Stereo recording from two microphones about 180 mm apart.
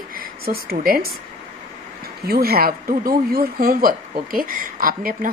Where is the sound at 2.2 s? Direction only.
60° right (ahead or behind).